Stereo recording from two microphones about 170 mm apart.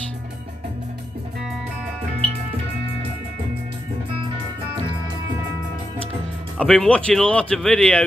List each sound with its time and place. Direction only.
6.6 s speech: 5° left (ahead or behind)